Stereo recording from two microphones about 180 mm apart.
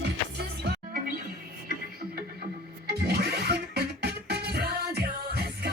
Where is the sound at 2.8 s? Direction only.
60° right (ahead or behind).